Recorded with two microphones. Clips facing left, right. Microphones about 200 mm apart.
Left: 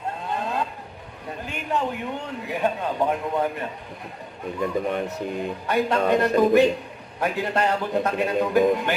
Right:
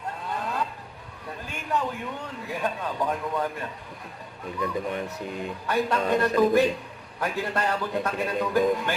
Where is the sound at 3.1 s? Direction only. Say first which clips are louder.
Left 4 dB; 25° left (ahead or behind).